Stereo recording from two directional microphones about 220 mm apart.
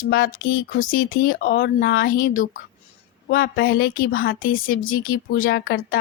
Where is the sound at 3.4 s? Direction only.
45° left (ahead or behind).